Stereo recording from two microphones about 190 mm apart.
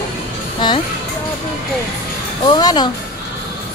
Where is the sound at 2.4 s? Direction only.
25° left (ahead or behind).